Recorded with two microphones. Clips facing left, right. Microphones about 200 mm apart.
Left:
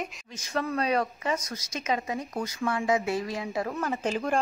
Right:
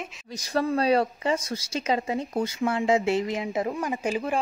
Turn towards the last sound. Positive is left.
turn(degrees=-5)  # may be behind; listen again after turning